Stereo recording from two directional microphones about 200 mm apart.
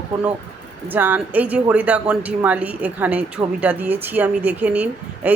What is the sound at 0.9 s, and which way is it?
Speech, 10° right (ahead or behind).